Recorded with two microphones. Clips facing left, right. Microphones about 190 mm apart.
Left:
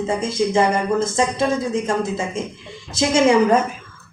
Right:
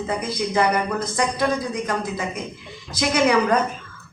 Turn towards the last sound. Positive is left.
turn(degrees=25)  # may be behind; listen again after turning